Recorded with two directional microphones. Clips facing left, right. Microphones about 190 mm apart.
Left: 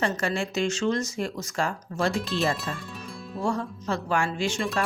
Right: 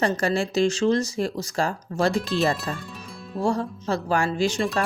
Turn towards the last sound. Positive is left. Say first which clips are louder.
# right 4 dB
turn(degrees=-35)  # may be behind; listen again after turning